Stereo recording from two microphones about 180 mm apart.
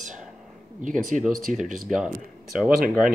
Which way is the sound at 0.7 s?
45° right (ahead or behind).